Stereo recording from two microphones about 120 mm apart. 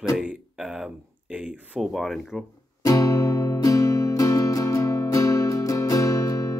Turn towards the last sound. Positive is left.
turn(degrees=25)  # may be behind; listen again after turning